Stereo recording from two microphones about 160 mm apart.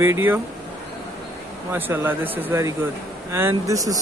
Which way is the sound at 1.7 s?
10° right (ahead or behind).